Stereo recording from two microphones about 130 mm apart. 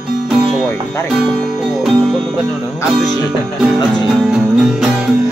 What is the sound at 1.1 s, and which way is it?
Music, 5° right (ahead or behind).